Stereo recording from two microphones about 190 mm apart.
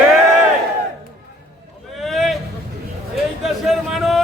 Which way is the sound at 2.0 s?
Centre (ahead or behind).